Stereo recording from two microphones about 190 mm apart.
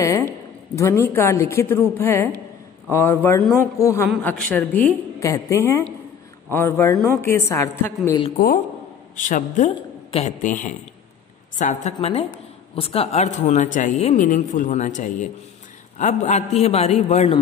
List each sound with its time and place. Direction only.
0.7 s a woman's voice: 15° left (ahead or behind)
9.1 s a woman's voice: 40° left (ahead or behind)